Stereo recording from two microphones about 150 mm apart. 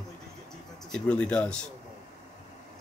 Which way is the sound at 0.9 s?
5° left (ahead or behind).